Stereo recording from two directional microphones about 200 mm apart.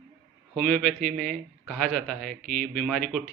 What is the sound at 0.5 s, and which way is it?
A man's voice, 5° left (ahead or behind).